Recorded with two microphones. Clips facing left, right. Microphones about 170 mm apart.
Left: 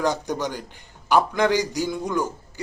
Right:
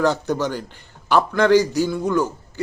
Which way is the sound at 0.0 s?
15° left (ahead or behind).